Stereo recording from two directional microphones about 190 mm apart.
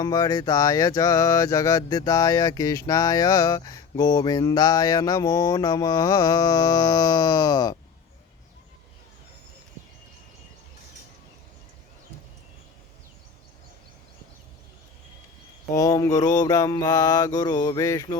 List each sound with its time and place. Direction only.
0.0 s music: 20° left (ahead or behind)
15.7 s music: 20° left (ahead or behind)